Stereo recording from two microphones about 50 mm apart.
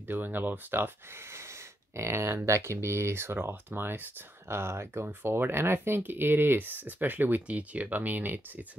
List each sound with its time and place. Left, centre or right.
0.0 s speech: right
1.2 s a sound: right
2.4 s speech: right
3.4 s speech: right
7.4 s speech: right